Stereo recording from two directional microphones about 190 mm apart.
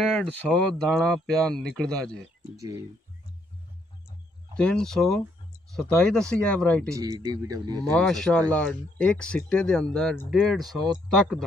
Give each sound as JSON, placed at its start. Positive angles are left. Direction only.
{"t": 0.1, "sound": "speech", "side_deg": 5}
{"t": 2.5, "sound": "speech", "side_deg": -15}
{"t": 4.6, "sound": "speech", "side_deg": 5}
{"t": 6.9, "sound": "a man's voice", "side_deg": -20}
{"t": 8.1, "sound": "speech", "side_deg": 5}